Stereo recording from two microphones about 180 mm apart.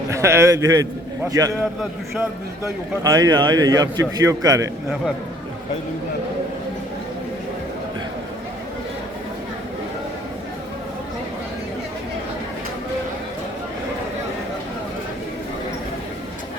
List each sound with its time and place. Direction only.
0.1 s a man's voice: 15° right (ahead or behind)
3.0 s a man's voice: 20° right (ahead or behind)